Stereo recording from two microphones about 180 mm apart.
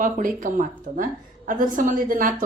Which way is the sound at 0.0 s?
50° right (ahead or behind).